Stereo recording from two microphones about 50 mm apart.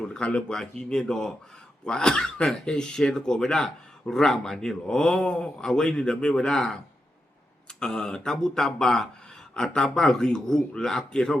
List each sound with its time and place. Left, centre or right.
0.0 s speech: left